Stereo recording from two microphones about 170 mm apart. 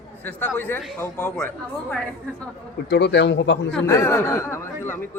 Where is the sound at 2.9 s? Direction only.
85° left.